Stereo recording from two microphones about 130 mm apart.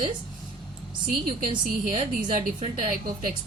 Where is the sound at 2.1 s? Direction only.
90° right.